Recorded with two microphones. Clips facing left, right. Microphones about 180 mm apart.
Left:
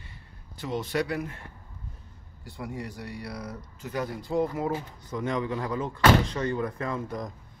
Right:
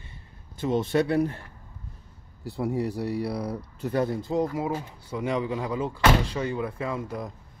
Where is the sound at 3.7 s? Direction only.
35° right (ahead or behind).